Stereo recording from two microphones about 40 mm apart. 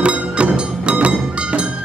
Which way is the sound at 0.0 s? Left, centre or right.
Right.